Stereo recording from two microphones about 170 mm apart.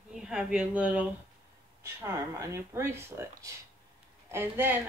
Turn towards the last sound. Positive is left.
turn(degrees=-10)  # may be behind; listen again after turning